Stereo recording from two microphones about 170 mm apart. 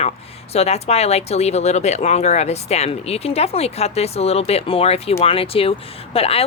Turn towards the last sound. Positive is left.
turn(degrees=35)  # may be behind; listen again after turning